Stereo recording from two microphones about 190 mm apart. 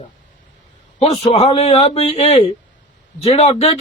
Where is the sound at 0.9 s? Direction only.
30° left (ahead or behind).